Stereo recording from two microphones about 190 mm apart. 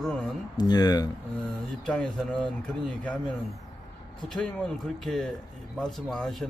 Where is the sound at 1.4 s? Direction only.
5° left (ahead or behind).